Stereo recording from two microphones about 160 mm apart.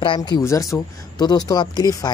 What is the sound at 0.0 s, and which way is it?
Speech, 30° left (ahead or behind).